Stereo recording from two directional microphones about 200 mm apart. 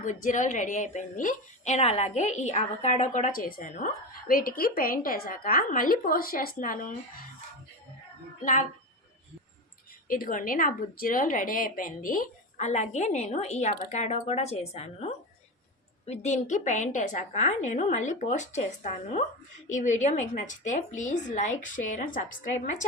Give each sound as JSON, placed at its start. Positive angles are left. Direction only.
{"t": 0.0, "sound": "a woman's voice", "side_deg": 40}
{"t": 10.1, "sound": "a woman's voice", "side_deg": 45}